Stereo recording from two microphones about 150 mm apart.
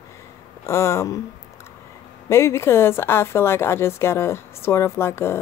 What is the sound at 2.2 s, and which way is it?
A woman's voice, 20° left (ahead or behind).